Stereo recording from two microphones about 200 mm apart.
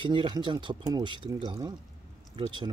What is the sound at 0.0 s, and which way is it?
Speech, 25° right (ahead or behind).